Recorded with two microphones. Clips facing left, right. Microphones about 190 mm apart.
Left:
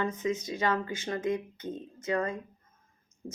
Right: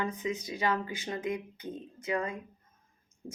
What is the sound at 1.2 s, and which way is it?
Speech, 25° left (ahead or behind).